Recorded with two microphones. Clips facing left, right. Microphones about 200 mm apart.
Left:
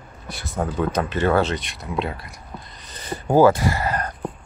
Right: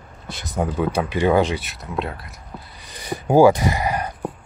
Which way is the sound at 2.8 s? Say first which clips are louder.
Right 2 dB; 10° right (ahead or behind).